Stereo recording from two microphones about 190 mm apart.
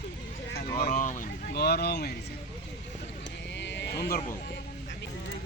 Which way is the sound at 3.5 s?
65° left (ahead or behind).